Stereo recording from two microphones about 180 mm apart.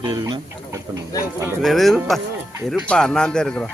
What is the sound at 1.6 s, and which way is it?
Speech, centre (ahead or behind).